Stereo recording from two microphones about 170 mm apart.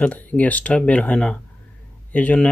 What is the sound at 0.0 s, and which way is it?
Speech, 10° left (ahead or behind).